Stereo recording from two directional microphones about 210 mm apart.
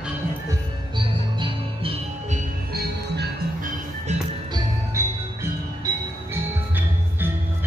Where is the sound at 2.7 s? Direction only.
50° right (ahead or behind).